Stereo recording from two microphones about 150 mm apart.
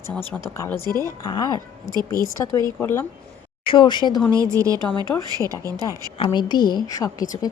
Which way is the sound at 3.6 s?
35° left (ahead or behind).